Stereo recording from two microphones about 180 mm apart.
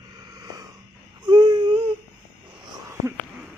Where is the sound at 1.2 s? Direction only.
25° right (ahead or behind).